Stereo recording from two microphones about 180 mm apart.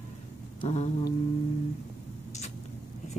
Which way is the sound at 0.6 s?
35° left (ahead or behind).